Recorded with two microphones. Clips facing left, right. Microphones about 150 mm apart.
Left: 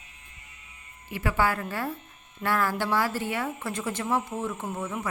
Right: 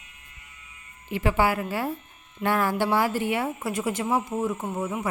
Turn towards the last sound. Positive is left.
turn(degrees=-20)  # may be behind; listen again after turning